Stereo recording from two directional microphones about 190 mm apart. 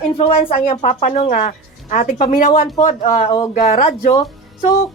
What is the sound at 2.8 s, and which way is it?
Speech, 35° left (ahead or behind).